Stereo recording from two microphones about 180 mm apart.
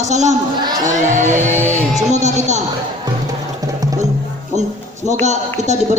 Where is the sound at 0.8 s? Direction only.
45° right (ahead or behind).